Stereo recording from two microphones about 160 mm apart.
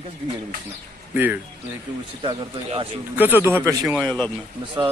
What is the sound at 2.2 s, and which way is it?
Speech, 35° right (ahead or behind).